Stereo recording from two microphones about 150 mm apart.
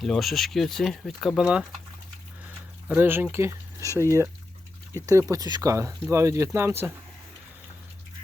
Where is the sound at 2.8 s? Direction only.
10° right (ahead or behind).